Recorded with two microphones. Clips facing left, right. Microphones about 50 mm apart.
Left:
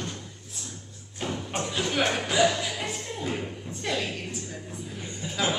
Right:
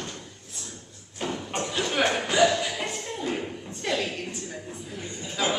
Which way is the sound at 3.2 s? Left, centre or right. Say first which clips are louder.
Right 1 dB; centre.